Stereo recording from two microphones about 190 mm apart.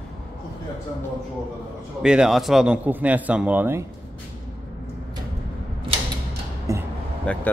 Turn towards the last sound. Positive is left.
turn(degrees=5)  # may be behind; listen again after turning